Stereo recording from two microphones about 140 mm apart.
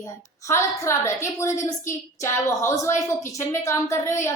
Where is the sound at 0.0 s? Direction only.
20° left (ahead or behind).